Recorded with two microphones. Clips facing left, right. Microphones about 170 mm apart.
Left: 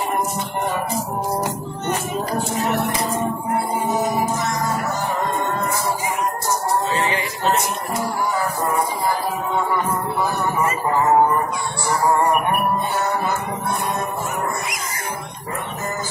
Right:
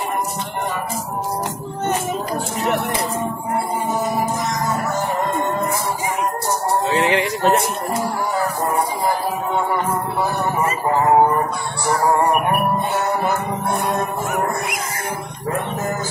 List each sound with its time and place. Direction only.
6.9 s male singing: 70° right (ahead or behind)